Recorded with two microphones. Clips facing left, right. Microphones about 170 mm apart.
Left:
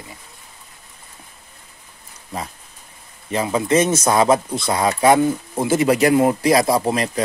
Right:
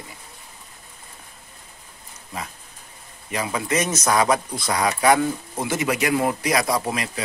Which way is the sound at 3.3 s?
25° left (ahead or behind).